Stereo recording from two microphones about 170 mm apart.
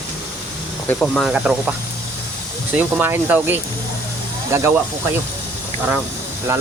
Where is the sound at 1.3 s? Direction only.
5° right (ahead or behind).